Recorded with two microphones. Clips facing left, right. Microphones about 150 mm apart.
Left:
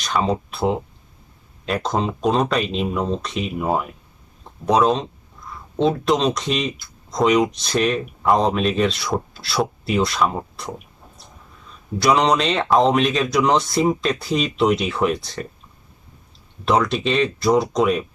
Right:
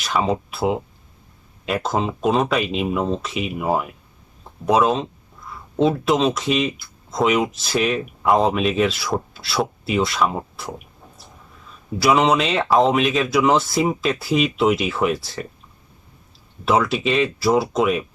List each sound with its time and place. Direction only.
0.0 s speech: 5° right (ahead or behind)
11.9 s speech: 5° right (ahead or behind)
16.6 s speech: 5° right (ahead or behind)